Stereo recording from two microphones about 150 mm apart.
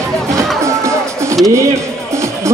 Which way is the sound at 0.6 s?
20° right (ahead or behind).